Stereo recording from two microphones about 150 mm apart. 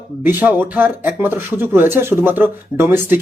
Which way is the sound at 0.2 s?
10° right (ahead or behind).